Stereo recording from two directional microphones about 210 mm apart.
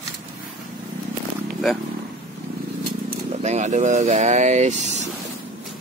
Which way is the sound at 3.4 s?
35° right (ahead or behind).